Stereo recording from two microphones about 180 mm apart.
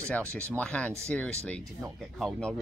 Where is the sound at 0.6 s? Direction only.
5° left (ahead or behind).